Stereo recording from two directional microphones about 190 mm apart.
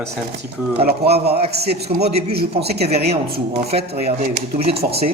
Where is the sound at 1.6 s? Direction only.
35° right (ahead or behind).